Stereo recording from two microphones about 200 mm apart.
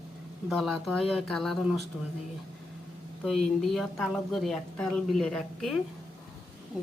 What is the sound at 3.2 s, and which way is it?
Speech, centre (ahead or behind).